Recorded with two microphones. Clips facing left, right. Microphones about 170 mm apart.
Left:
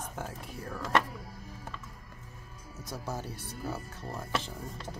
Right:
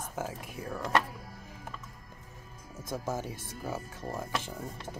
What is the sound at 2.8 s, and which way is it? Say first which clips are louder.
Speech: right 4 dB; 50° right (ahead or behind).